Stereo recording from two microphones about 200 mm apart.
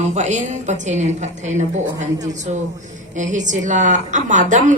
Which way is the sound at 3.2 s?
40° right (ahead or behind).